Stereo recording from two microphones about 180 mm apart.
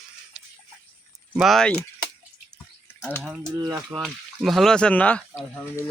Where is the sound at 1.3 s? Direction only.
Centre (ahead or behind).